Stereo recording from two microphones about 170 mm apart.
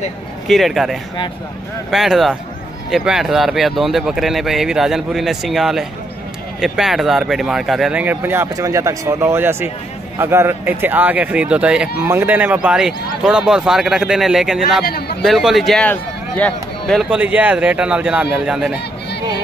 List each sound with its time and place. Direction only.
0.5 s speech: centre (ahead or behind)
14.9 s a man's voice: 65° left (ahead or behind)
15.2 s speech: centre (ahead or behind)